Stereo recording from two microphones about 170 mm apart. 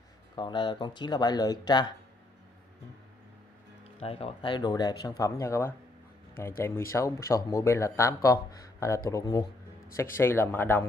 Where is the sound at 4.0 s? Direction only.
35° left (ahead or behind).